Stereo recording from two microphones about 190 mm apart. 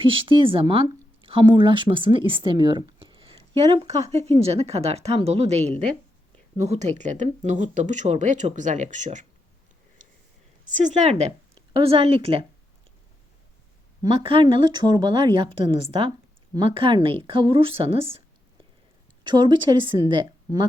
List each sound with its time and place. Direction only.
0.0 s speech: 25° right (ahead or behind)
10.7 s speech: 40° right (ahead or behind)
14.0 s speech: 25° right (ahead or behind)
19.2 s speech: 25° right (ahead or behind)